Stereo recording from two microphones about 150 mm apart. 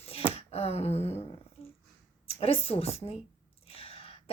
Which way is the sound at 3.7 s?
40° left (ahead or behind).